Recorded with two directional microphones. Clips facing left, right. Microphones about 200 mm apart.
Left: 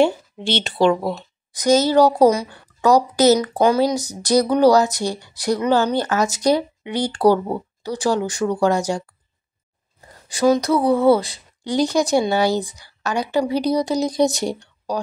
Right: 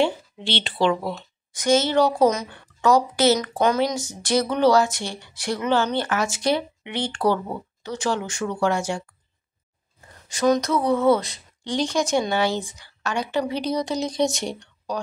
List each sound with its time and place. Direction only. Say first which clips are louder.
0.0 s a woman's voice: left 5 dB; 45° left (ahead or behind)
10.6 s a woman's voice: left 4 dB; 35° left (ahead or behind)